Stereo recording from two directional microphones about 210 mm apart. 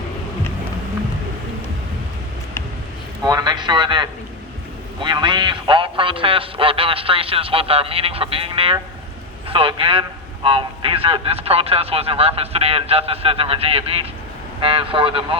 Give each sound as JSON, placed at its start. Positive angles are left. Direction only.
{"t": 3.2, "sound": "a sound", "side_deg": -20}
{"t": 5.0, "sound": "music", "side_deg": -20}
{"t": 9.5, "sound": "a man's voice", "side_deg": -25}